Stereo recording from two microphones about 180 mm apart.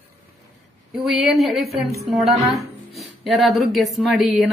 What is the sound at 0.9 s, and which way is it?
Speech, centre (ahead or behind).